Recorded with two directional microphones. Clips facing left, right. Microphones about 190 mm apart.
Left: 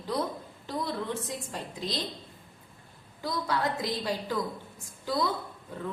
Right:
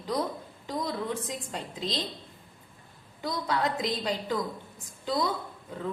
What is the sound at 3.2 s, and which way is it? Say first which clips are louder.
A woman's voice: right 1 dB; 20° right (ahead or behind).